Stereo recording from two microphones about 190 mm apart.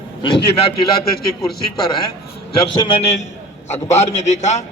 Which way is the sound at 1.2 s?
55° left (ahead or behind).